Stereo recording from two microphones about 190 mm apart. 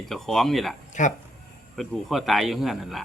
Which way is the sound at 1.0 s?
40° left (ahead or behind).